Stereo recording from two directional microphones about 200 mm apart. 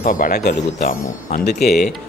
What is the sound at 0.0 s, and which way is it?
Speech, 45° left (ahead or behind).